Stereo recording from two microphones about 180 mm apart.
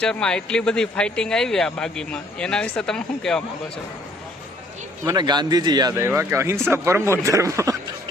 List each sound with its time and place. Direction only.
0.0 s speech: 5° left (ahead or behind)
5.0 s speech: 25° right (ahead or behind)